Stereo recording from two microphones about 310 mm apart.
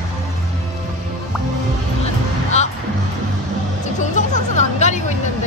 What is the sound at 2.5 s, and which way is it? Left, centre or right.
Music, left.